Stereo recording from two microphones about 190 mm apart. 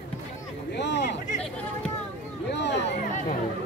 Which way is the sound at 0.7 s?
65° left (ahead or behind).